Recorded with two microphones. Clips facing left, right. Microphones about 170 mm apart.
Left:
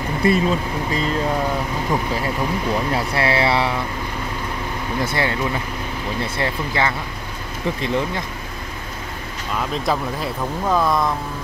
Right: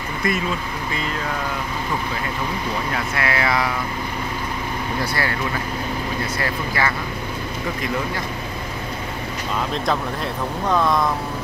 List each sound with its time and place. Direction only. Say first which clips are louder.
0.2 s speech: left 6 dB; 30° left (ahead or behind)
2.9 s speech: left 4 dB; 30° left (ahead or behind)
5.0 s speech: left 4 dB; 20° left (ahead or behind)
6.3 s speech: left 2 dB; 25° left (ahead or behind)
9.8 s speech: left 1 dB; 5° left (ahead or behind)